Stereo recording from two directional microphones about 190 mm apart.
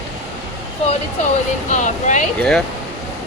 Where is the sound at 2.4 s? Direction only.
5° left (ahead or behind).